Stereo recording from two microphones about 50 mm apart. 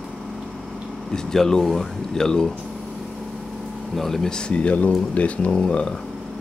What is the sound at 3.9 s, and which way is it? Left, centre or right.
Speech, centre.